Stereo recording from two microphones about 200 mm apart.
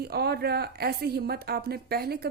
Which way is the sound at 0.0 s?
50° right (ahead or behind).